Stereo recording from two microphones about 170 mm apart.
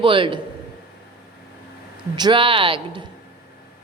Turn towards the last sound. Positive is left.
turn(degrees=-30)  # may be behind; listen again after turning